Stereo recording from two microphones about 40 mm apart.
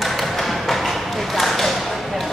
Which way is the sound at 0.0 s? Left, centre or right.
Centre.